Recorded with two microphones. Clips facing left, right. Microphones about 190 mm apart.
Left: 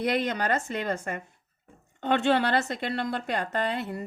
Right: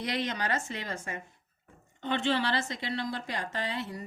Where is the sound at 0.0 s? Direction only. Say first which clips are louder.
Left 6 dB; 55° left (ahead or behind).